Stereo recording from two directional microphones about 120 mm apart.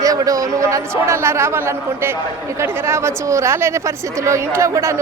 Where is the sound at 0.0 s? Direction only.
30° right (ahead or behind).